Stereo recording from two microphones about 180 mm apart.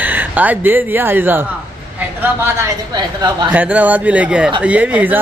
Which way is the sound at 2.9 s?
25° right (ahead or behind).